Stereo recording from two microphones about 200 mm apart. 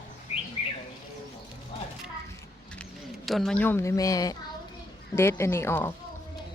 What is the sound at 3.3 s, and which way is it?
A woman's voice, centre (ahead or behind).